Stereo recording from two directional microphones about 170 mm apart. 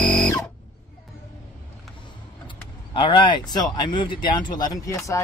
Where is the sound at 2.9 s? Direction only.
30° left (ahead or behind).